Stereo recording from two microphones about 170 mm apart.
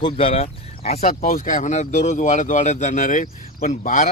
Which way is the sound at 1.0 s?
50° left (ahead or behind).